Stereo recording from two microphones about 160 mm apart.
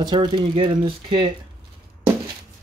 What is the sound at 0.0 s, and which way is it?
Speech, 25° right (ahead or behind).